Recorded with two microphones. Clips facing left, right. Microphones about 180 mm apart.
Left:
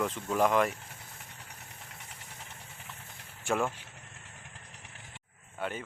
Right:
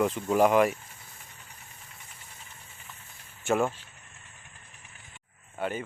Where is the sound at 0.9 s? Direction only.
70° left (ahead or behind).